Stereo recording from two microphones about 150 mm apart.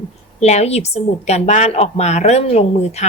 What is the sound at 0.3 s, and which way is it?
A woman's voice, 50° left (ahead or behind).